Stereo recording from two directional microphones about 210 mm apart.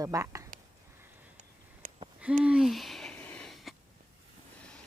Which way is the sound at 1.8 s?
40° right (ahead or behind).